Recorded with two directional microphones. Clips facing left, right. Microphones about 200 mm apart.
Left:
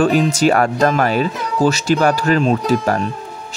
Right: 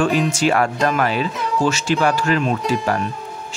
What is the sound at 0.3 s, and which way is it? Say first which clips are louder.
Speech: left 3 dB; 40° left (ahead or behind).